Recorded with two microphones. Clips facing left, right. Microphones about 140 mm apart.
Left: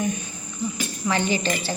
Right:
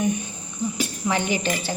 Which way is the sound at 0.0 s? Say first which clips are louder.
Right 3 dB; 20° right (ahead or behind).